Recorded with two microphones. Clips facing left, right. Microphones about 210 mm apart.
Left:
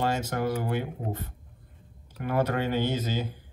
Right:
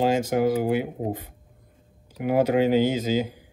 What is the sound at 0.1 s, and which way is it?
Speech, 10° right (ahead or behind).